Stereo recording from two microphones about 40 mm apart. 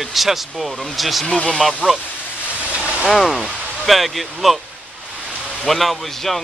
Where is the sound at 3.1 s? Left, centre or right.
Centre.